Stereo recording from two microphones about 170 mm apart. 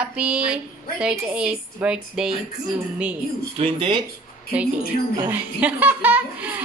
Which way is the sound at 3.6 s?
30° right (ahead or behind).